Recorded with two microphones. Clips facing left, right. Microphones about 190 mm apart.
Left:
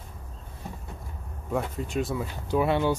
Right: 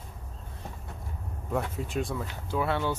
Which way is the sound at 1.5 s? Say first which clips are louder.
Left 2 dB; centre (ahead or behind).